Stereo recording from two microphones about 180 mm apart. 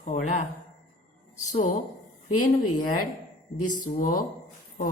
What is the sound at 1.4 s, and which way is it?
Speech, 35° left (ahead or behind).